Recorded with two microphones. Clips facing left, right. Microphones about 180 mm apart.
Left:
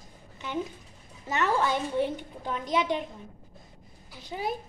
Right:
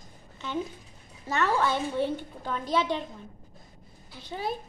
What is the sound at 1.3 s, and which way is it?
A woman's voice, 15° left (ahead or behind).